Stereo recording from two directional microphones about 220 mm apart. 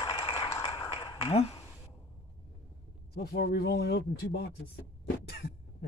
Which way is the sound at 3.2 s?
45° left (ahead or behind).